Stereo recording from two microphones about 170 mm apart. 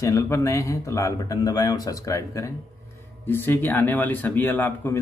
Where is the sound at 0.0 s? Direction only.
15° left (ahead or behind).